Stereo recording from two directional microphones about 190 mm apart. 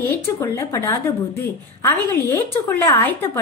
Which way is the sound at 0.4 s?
15° left (ahead or behind).